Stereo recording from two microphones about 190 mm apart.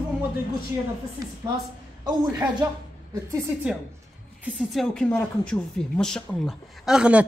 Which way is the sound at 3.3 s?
5° right (ahead or behind).